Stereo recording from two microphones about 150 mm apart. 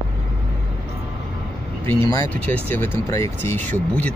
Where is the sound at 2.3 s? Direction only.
10° left (ahead or behind).